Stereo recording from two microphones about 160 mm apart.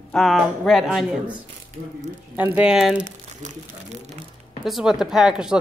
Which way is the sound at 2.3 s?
10° right (ahead or behind).